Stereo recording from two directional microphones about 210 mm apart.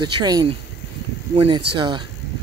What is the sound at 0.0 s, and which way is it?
Speech, 20° right (ahead or behind).